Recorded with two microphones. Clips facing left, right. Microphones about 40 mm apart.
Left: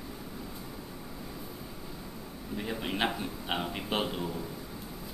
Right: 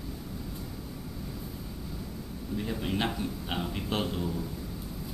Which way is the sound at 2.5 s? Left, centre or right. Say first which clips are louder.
Right 1 dB; centre.